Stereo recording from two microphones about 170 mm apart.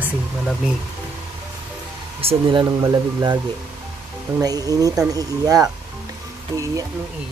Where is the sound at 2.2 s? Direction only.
30° right (ahead or behind).